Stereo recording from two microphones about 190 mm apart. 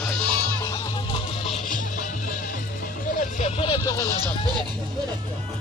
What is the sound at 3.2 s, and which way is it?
Vehicle, 35° left (ahead or behind).